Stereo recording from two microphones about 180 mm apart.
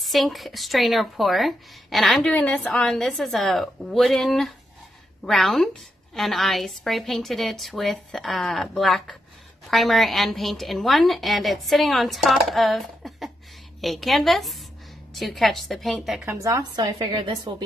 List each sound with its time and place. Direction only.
0.0 s speech: centre (ahead or behind)
16.3 s a woman's voice: 15° right (ahead or behind)